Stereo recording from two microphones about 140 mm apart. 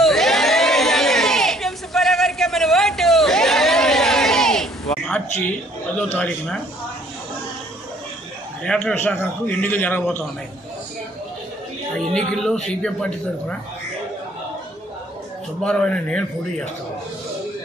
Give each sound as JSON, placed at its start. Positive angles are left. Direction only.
{"t": 0.0, "sound": "a sound", "side_deg": 0}
{"t": 6.1, "sound": "a man's voice", "side_deg": 10}
{"t": 8.6, "sound": "a man's voice", "side_deg": 5}
{"t": 12.0, "sound": "a man's voice", "side_deg": 5}
{"t": 15.6, "sound": "a man's voice", "side_deg": 5}